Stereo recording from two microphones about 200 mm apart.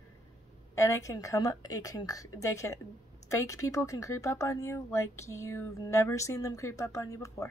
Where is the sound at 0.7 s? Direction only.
15° left (ahead or behind).